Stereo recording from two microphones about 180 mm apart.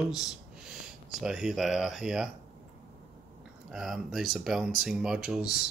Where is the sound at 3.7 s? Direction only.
Centre (ahead or behind).